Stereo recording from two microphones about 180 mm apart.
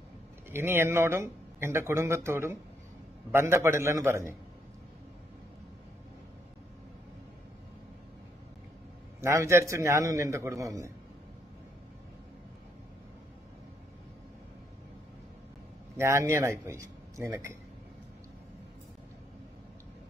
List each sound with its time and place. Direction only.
0.5 s speech: 15° right (ahead or behind)
9.2 s speech: 15° right (ahead or behind)
16.0 s speech: 15° right (ahead or behind)